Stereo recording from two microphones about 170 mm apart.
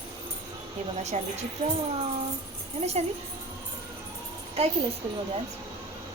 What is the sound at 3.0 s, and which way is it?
Speech, 40° right (ahead or behind).